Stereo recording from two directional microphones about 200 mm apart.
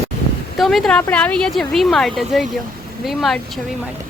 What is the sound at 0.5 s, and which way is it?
Speech, centre (ahead or behind).